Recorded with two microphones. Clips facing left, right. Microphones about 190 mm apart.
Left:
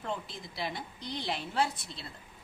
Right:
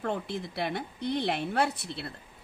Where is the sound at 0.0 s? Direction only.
65° right (ahead or behind).